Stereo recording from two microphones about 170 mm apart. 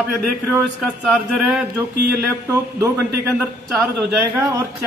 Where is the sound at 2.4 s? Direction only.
15° right (ahead or behind).